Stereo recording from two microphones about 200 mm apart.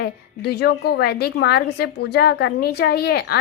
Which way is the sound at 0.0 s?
55° left (ahead or behind).